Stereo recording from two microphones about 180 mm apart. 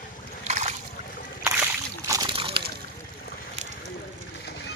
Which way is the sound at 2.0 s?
20° right (ahead or behind).